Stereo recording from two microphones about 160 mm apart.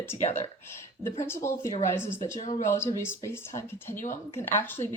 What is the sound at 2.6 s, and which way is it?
Speech, 15° left (ahead or behind).